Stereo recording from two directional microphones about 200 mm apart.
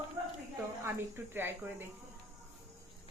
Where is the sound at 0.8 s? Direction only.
10° right (ahead or behind).